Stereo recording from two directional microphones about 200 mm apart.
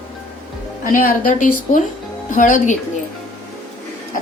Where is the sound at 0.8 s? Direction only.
45° left (ahead or behind).